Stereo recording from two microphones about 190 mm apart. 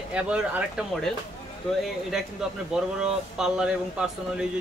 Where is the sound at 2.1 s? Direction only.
Centre (ahead or behind).